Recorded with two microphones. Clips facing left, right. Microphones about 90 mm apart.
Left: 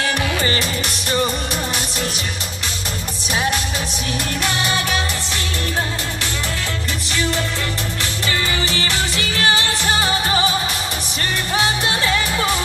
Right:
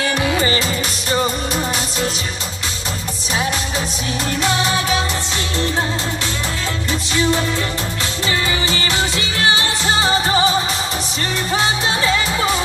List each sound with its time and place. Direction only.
0.2 s music: 25° right (ahead or behind)
7.1 s music: 20° right (ahead or behind)